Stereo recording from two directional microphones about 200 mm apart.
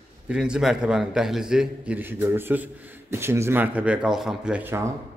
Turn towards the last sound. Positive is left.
turn(degrees=-10)  # may be behind; listen again after turning